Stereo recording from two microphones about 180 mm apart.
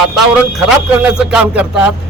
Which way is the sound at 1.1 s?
5° right (ahead or behind).